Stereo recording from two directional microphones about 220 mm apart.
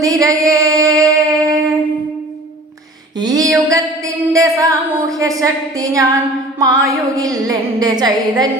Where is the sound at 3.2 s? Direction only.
15° right (ahead or behind).